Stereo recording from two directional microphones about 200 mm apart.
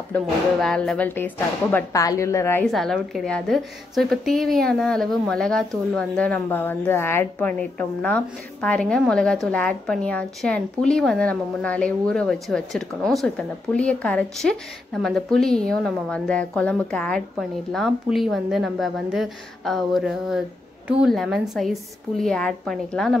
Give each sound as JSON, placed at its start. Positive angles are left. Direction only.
{"t": 0.1, "sound": "speech", "side_deg": 5}
{"t": 2.6, "sound": "a woman's voice", "side_deg": 0}